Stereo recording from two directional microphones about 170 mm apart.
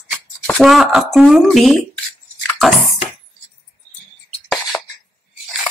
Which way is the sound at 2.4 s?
Centre (ahead or behind).